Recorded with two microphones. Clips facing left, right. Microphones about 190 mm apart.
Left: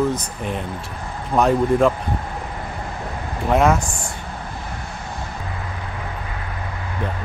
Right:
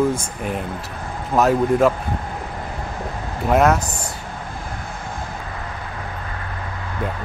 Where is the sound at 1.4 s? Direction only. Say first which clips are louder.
Even; 5° right (ahead or behind).